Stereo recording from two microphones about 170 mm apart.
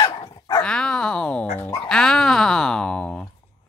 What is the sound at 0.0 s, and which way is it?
Dog, 25° left (ahead or behind).